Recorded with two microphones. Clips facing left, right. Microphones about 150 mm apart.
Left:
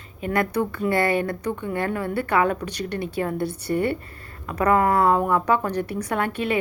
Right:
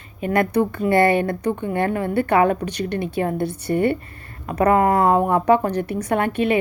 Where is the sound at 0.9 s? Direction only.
20° right (ahead or behind).